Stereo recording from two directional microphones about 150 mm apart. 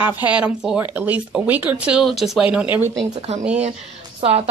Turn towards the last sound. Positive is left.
turn(degrees=-45)  # may be behind; listen again after turning